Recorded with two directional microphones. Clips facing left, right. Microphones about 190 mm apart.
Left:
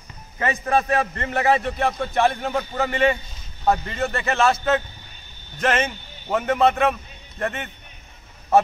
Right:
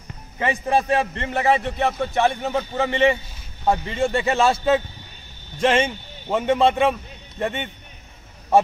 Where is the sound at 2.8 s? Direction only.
25° right (ahead or behind).